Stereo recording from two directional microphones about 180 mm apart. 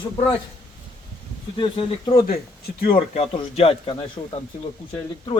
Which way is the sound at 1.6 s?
30° left (ahead or behind).